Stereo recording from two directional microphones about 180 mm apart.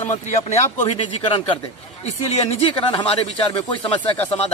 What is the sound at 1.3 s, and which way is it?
Speech, 30° left (ahead or behind).